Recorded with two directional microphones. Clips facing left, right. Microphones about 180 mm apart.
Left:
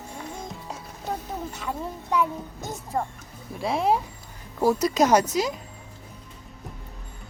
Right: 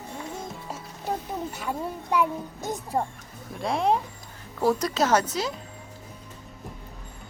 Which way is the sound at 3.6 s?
Centre (ahead or behind).